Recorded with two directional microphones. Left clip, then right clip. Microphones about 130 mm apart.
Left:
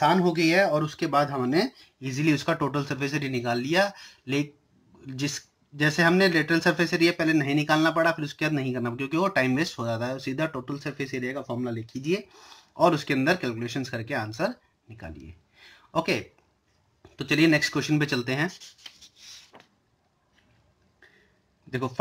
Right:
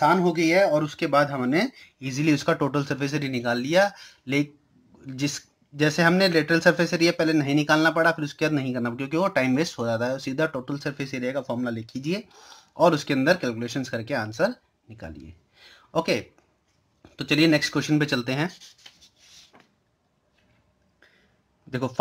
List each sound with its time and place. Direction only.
0.9 s speech: 40° right (ahead or behind)
5.0 s speech: 35° right (ahead or behind)
19.5 s a sound: 60° left (ahead or behind)
21.6 s speech: 45° right (ahead or behind)